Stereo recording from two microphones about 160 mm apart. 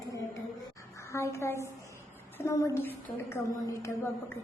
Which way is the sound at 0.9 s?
20° left (ahead or behind).